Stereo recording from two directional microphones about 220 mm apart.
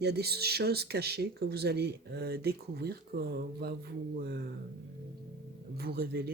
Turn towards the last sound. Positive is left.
turn(degrees=-45)  # may be behind; listen again after turning